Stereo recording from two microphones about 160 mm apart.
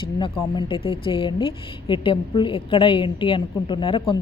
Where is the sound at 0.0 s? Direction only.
30° left (ahead or behind).